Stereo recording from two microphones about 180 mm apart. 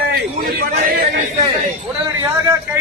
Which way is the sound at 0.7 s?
55° right (ahead or behind).